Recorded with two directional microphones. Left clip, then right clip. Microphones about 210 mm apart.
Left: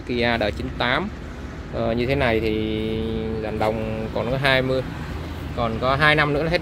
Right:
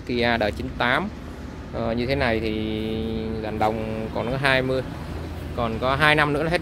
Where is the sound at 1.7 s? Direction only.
10° left (ahead or behind).